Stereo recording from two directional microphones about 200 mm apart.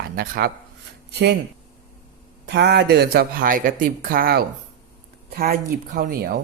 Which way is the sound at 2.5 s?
60° right (ahead or behind).